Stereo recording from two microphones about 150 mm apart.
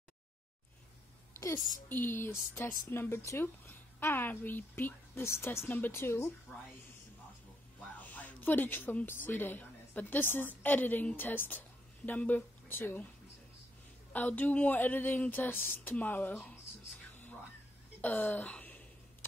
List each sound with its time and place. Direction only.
1.9 s a woman's voice: 15° left (ahead or behind)
8.0 s a woman's voice: 10° left (ahead or behind)
14.1 s a woman's voice: 10° left (ahead or behind)
18.0 s speech: 10° left (ahead or behind)